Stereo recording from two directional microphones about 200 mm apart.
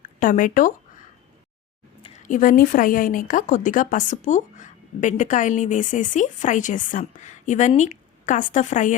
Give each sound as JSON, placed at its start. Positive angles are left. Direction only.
{"t": 0.2, "sound": "speech", "side_deg": 40}
{"t": 2.0, "sound": "a sound", "side_deg": 25}
{"t": 2.2, "sound": "speech", "side_deg": 40}